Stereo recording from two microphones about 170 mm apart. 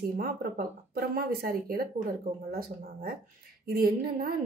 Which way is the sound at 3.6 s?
60° right (ahead or behind).